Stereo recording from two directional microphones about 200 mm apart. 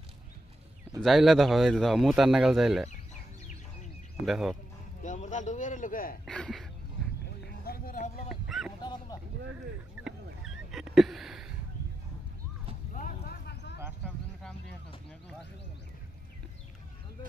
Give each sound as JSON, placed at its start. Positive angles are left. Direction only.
{"t": 1.0, "sound": "speech", "side_deg": 0}
{"t": 4.3, "sound": "speech", "side_deg": 0}
{"t": 5.0, "sound": "a man's voice", "side_deg": 40}
{"t": 6.2, "sound": "speech", "side_deg": 5}
{"t": 7.2, "sound": "music", "side_deg": 50}
{"t": 8.3, "sound": "music", "side_deg": 0}
{"t": 8.8, "sound": "a sound", "side_deg": 20}
{"t": 10.0, "sound": "a sound", "side_deg": 0}
{"t": 12.9, "sound": "a sound", "side_deg": 45}